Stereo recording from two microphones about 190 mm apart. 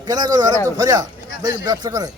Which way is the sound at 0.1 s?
20° right (ahead or behind).